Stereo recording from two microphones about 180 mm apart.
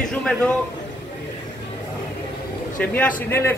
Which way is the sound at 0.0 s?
5° left (ahead or behind).